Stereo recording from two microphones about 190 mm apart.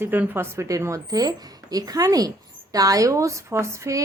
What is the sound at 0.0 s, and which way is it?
A woman's voice, 10° right (ahead or behind).